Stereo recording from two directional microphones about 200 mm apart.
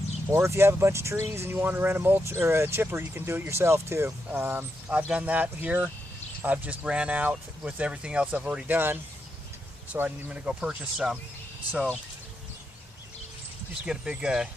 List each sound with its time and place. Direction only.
0.3 s speech: 15° right (ahead or behind)
13.8 s speech: 5° right (ahead or behind)